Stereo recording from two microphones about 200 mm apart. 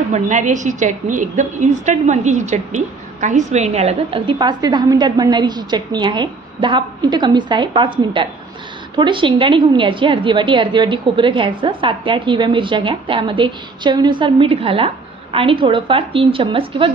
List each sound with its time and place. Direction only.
0.1 s a woman's voice: 35° right (ahead or behind)